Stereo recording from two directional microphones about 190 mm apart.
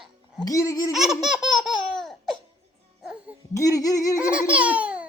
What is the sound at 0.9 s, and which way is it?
Laughter, centre (ahead or behind).